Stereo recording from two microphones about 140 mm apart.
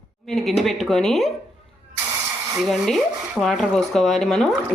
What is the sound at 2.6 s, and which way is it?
Speech, centre (ahead or behind).